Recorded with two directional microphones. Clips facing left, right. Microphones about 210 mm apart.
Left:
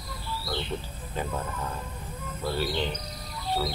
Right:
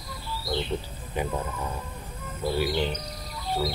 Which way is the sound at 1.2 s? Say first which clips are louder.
Right 3 dB; 15° right (ahead or behind).